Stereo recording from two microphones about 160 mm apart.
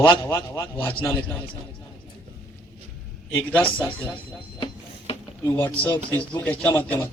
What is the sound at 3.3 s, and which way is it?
Speech, 15° left (ahead or behind).